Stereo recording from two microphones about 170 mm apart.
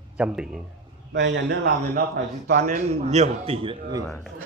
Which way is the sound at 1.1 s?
90° right.